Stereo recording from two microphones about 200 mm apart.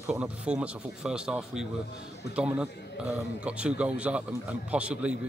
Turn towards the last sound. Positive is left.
turn(degrees=-5)  # may be behind; listen again after turning